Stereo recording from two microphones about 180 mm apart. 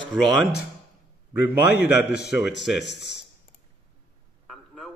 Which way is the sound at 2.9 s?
70° left (ahead or behind).